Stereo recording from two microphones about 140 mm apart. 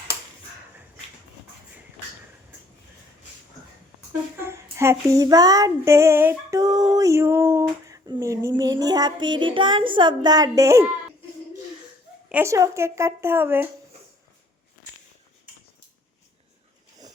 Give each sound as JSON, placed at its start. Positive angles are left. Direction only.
{"t": 4.4, "sound": "child singing", "side_deg": -20}
{"t": 12.3, "sound": "child singing", "side_deg": -20}